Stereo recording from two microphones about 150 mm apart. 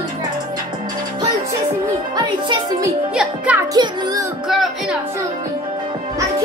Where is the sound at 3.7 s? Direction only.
25° right (ahead or behind).